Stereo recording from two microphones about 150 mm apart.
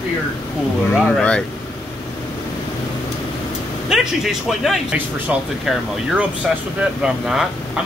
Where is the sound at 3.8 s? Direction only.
Centre (ahead or behind).